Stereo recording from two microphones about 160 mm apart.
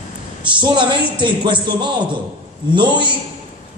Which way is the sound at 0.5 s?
30° right (ahead or behind).